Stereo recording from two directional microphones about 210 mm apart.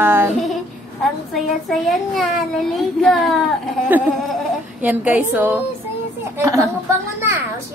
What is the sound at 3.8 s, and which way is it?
A woman's voice, 10° right (ahead or behind).